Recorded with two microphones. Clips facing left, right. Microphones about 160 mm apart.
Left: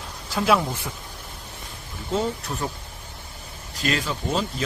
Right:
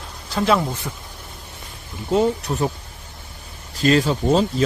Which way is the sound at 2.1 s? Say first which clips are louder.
Right 7 dB; 20° right (ahead or behind).